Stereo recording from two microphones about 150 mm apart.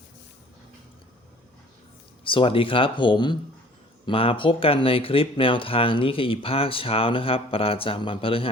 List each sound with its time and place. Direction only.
2.2 s speech: 35° left (ahead or behind)